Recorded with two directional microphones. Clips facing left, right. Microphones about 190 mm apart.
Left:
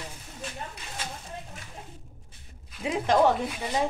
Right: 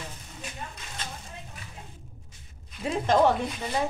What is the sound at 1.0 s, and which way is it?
Speech, 10° left (ahead or behind).